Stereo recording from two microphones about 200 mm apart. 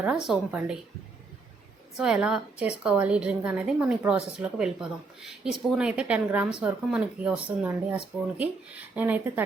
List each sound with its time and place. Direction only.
0.3 s a woman's voice: 5° right (ahead or behind)
2.0 s a woman's voice: 5° right (ahead or behind)